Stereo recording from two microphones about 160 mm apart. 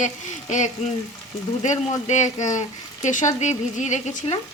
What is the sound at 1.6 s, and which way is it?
Speech, 45° left (ahead or behind).